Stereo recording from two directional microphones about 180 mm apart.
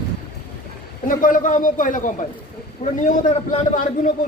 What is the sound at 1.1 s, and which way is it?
A man's voice, 50° left (ahead or behind).